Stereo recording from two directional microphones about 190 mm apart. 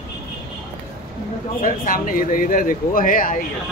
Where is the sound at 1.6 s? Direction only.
45° left (ahead or behind).